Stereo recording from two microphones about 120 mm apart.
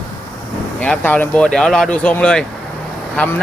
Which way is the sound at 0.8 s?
10° left (ahead or behind).